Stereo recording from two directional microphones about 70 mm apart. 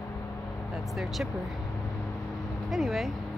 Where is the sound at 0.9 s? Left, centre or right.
Centre.